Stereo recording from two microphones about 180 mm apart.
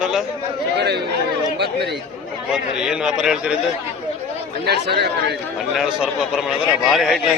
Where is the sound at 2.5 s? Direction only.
5° right (ahead or behind).